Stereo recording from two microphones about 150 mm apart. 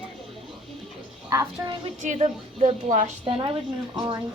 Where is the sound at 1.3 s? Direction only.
20° right (ahead or behind).